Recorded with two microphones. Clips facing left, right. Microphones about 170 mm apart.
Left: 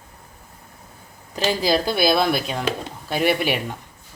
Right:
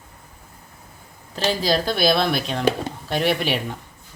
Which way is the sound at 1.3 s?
10° left (ahead or behind).